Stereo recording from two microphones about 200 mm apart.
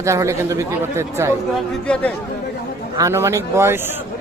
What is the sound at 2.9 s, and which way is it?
Speech, 15° right (ahead or behind).